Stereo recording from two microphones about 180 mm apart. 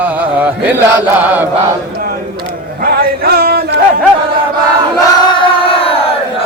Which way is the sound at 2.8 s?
55° right (ahead or behind).